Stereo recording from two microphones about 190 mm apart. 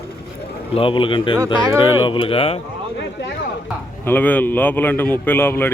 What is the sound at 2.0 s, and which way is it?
Speech, 25° left (ahead or behind).